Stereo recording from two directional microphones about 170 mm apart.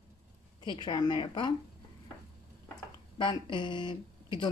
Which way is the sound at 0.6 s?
25° left (ahead or behind).